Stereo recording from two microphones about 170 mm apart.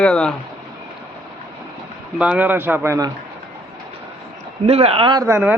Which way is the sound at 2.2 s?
10° right (ahead or behind).